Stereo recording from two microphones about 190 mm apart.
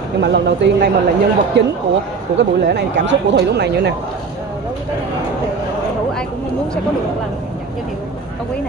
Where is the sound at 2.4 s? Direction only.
65° right (ahead or behind).